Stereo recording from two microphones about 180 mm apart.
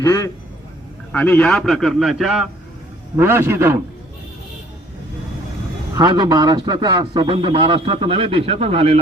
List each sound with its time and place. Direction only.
0.0 s a man's voice: 20° left (ahead or behind); by 3.8 s 15° right (ahead or behind)
5.9 s speech: 20° right (ahead or behind)